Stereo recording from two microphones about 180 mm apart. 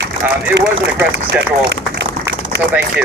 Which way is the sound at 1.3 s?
75° right (ahead or behind).